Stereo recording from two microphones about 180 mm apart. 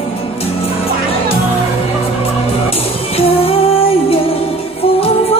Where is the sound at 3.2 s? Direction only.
30° left (ahead or behind).